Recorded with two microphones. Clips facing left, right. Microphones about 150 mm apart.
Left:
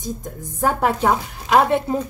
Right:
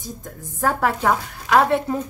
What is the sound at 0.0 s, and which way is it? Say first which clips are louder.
A woman's voice: left 5 dB; 20° left (ahead or behind).